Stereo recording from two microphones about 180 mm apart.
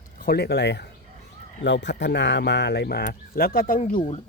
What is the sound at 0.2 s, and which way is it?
Speech, 60° left (ahead or behind).